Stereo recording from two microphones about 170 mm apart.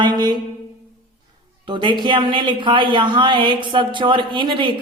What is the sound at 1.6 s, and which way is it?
A man's voice, 30° right (ahead or behind).